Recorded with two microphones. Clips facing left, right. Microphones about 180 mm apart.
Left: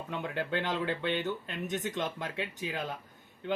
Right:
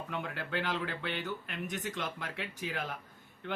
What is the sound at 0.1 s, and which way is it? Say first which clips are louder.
Speech: left 5 dB; 20° left (ahead or behind).